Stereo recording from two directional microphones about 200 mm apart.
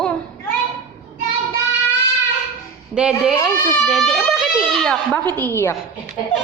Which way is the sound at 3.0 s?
5° right (ahead or behind).